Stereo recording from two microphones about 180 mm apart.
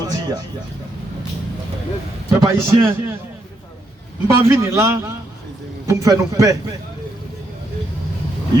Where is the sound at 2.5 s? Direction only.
15° right (ahead or behind).